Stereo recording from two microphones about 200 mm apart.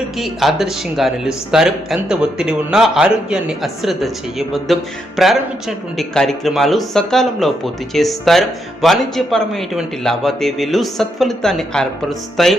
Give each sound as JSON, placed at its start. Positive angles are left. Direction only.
{"t": 0.2, "sound": "speech", "side_deg": 0}